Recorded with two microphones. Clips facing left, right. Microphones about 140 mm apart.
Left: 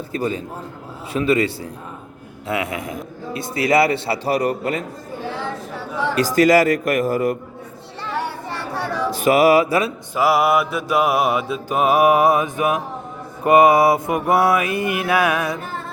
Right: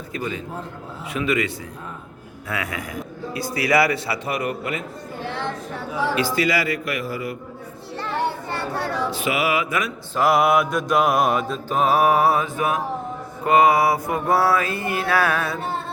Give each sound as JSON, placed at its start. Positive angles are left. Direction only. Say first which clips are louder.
{"t": 0.1, "sound": "mantra", "louder": "left 4 dB", "side_deg": 35}
{"t": 2.5, "sound": "a man's voice", "louder": "left 5 dB", "side_deg": 25}
{"t": 6.1, "sound": "a man's voice", "louder": "left 10 dB", "side_deg": 40}
{"t": 9.0, "sound": "mantra", "louder": "left 12 dB", "side_deg": 40}
{"t": 10.2, "sound": "mantra", "louder": "left 1 dB", "side_deg": 5}